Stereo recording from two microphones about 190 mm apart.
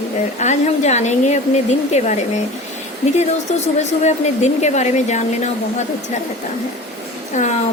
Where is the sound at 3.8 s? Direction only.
35° left (ahead or behind).